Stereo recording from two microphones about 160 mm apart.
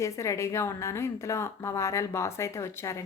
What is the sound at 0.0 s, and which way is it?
A woman's voice, 20° left (ahead or behind).